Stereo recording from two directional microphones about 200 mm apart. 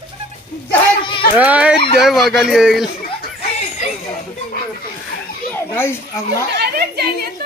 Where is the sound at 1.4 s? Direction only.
5° right (ahead or behind).